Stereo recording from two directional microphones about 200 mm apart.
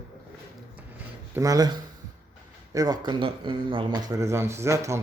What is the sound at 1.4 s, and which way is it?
Speech, 20° right (ahead or behind).